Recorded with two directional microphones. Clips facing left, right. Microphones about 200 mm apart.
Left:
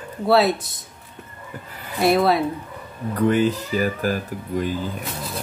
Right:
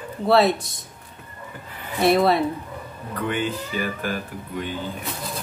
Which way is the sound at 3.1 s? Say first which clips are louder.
Left 7 dB; 40° left (ahead or behind).